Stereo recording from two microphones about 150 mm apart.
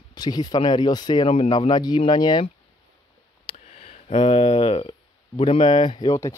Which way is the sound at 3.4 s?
40° left (ahead or behind).